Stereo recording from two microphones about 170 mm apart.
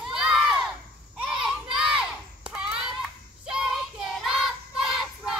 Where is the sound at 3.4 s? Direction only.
5° right (ahead or behind).